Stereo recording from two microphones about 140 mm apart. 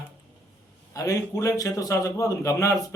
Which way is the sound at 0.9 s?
25° left (ahead or behind).